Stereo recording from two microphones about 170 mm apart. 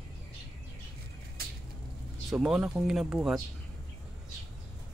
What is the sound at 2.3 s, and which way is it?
Speech, 5° right (ahead or behind).